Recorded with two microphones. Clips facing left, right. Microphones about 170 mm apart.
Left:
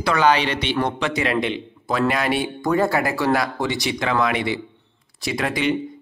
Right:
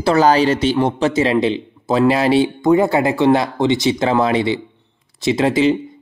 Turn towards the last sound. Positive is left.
turn(degrees=-25)  # may be behind; listen again after turning